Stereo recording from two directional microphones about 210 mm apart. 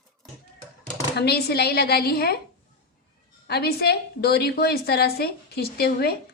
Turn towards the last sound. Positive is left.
turn(degrees=50)  # may be behind; listen again after turning